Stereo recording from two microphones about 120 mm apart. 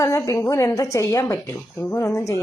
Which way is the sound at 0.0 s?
25° left (ahead or behind).